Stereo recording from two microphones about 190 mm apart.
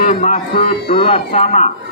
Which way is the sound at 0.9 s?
30° left (ahead or behind).